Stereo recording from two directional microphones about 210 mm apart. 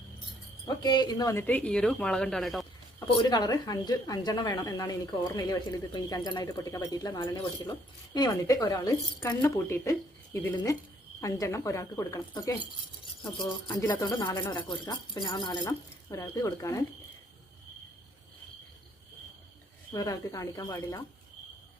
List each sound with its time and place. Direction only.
0.8 s a woman's voice: 20° left (ahead or behind); by 2.6 s centre (ahead or behind)
3.2 s a woman's voice: 20° left (ahead or behind)
13.7 s speech: 20° left (ahead or behind)
19.9 s speech: 15° left (ahead or behind)